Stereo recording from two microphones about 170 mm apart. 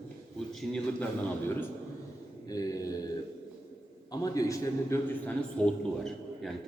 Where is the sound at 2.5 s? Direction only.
20° left (ahead or behind).